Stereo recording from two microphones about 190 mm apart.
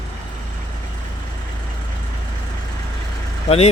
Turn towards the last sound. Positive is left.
turn(degrees=30)  # may be behind; listen again after turning